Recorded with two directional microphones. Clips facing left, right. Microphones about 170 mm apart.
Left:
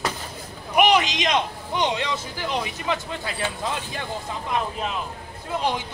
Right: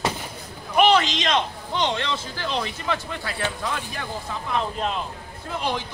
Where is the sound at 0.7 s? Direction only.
15° left (ahead or behind).